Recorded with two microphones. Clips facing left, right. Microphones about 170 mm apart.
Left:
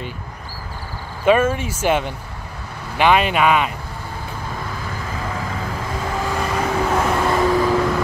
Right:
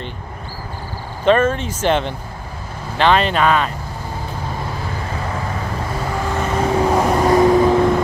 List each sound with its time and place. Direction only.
1.2 s speech: 10° left (ahead or behind)
6.4 s vehicle: 30° right (ahead or behind)
6.9 s vehicle: 15° right (ahead or behind)